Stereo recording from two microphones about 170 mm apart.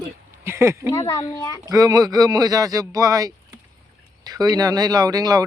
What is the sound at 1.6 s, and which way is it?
Speech, 20° right (ahead or behind).